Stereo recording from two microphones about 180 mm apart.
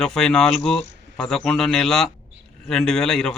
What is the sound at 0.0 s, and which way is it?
Speech, 5° left (ahead or behind).